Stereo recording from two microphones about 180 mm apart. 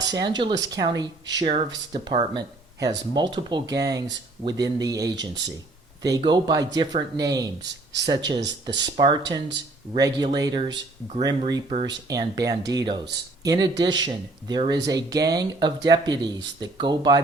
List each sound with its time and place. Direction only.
0.0 s speech: 20° right (ahead or behind)